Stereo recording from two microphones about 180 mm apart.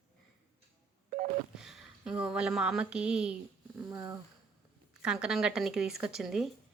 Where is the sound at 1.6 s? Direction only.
5° right (ahead or behind).